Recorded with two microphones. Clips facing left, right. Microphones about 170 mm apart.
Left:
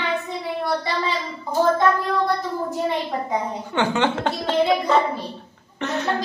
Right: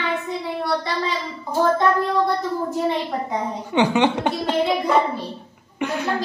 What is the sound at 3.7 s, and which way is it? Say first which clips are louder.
Speech: right 3 dB; 15° right (ahead or behind).